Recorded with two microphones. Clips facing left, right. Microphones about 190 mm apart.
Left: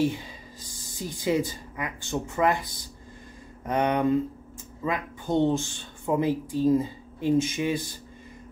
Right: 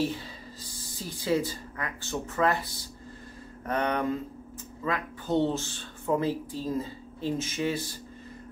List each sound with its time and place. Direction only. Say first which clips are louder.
0.8 s speech: left 2 dB; 15° left (ahead or behind)